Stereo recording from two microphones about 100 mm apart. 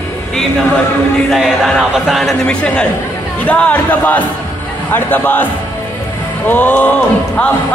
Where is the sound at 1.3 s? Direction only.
Centre (ahead or behind).